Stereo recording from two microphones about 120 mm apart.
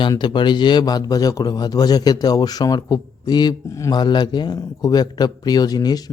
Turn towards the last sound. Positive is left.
turn(degrees=35)  # may be behind; listen again after turning